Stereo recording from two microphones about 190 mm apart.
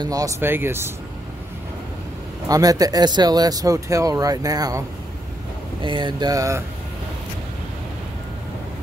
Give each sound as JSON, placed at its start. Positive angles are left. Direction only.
{"t": 0.0, "sound": "speech", "side_deg": -20}
{"t": 2.4, "sound": "speech", "side_deg": -20}